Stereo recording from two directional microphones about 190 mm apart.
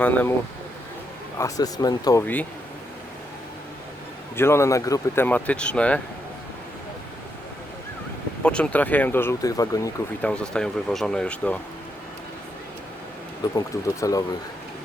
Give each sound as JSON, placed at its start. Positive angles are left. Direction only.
{"t": 0.0, "sound": "speech", "side_deg": 10}
{"t": 1.4, "sound": "speech", "side_deg": 20}
{"t": 2.2, "sound": "speech", "side_deg": 10}
{"t": 4.4, "sound": "speech", "side_deg": 15}
{"t": 8.4, "sound": "speech", "side_deg": 5}
{"t": 10.2, "sound": "speech", "side_deg": 5}
{"t": 13.6, "sound": "speech", "side_deg": 15}